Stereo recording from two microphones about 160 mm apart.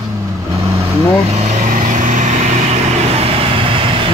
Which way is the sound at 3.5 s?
35° right (ahead or behind).